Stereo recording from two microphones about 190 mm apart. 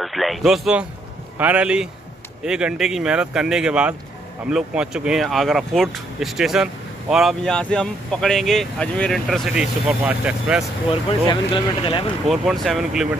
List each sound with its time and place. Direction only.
0.0 s speech: centre (ahead or behind)
10.9 s speech: 25° left (ahead or behind)
12.3 s speech: centre (ahead or behind)